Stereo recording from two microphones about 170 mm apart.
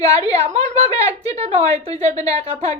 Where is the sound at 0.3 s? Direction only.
40° right (ahead or behind).